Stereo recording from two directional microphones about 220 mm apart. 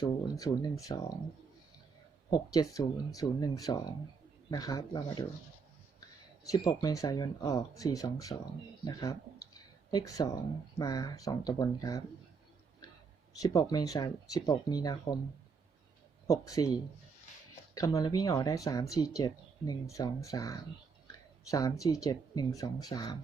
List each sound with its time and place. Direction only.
0.0 s speech: 15° left (ahead or behind)
2.3 s speech: 15° left (ahead or behind)
6.4 s speech: 15° left (ahead or behind)
13.4 s speech: 15° left (ahead or behind)
16.2 s speech: 15° left (ahead or behind)
17.7 s speech: 15° left (ahead or behind)